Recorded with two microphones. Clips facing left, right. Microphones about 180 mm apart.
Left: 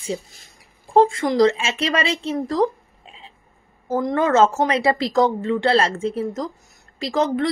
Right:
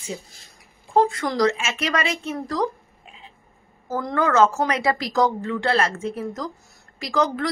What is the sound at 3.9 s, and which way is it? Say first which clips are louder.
A woman's voice: left 3 dB; 20° left (ahead or behind).